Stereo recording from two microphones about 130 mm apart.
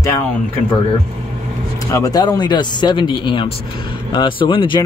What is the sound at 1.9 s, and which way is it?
Speech, 30° left (ahead or behind).